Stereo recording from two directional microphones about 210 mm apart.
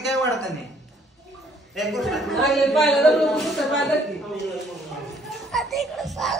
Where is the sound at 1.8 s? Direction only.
Centre (ahead or behind).